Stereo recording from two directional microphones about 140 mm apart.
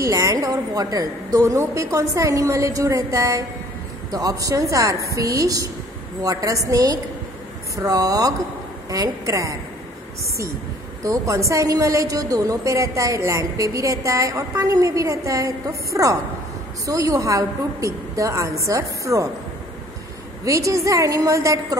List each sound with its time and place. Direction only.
0.1 s a woman's voice: 25° right (ahead or behind)
11.1 s a woman's voice: 20° right (ahead or behind)
20.4 s a woman's voice: 20° right (ahead or behind)